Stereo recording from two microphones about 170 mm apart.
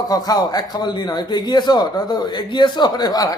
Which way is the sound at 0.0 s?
20° left (ahead or behind).